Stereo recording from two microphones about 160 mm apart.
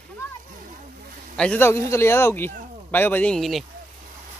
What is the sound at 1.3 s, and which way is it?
A man's voice, 5° left (ahead or behind).